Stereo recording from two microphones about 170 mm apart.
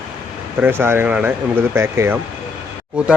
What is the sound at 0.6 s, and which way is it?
Speech, 15° right (ahead or behind).